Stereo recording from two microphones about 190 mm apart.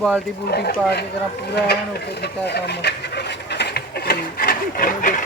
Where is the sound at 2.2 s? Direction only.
60° left (ahead or behind).